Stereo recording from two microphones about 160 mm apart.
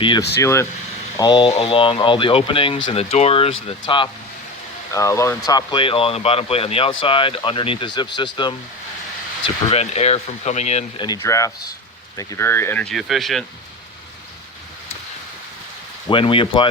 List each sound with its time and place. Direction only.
0.3 s speech: 15° left (ahead or behind); by 2.7 s 35° left (ahead or behind)
2.7 s speech: 45° left (ahead or behind)
4.9 s speech: 20° left (ahead or behind)
9.6 s speech: 40° left (ahead or behind)
10.9 s speech: 25° left (ahead or behind); by 13.4 s centre (ahead or behind)
16.0 s speech: 35° left (ahead or behind)